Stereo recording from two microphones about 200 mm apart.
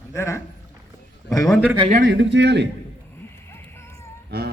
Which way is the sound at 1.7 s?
25° right (ahead or behind).